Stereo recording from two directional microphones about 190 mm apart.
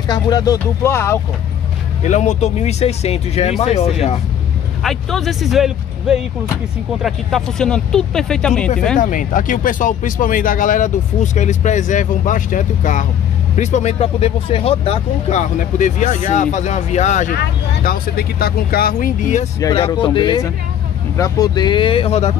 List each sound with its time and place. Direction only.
0.1 s speech: 20° left (ahead or behind)
2.0 s speech: 40° left (ahead or behind)
4.8 s speech: centre (ahead or behind)
8.9 s speech: 45° left (ahead or behind)
17.4 s speech: 55° left (ahead or behind)
19.7 s speech: 25° left (ahead or behind)